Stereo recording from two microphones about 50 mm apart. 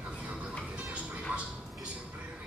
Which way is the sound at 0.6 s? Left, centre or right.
Right.